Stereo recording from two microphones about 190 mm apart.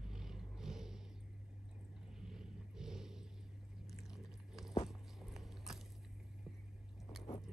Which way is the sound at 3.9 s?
Centre (ahead or behind).